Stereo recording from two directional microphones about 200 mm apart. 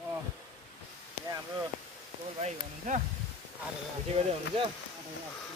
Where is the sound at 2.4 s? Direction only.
40° right (ahead or behind).